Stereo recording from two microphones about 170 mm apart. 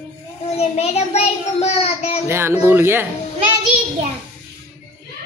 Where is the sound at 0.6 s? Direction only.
40° left (ahead or behind).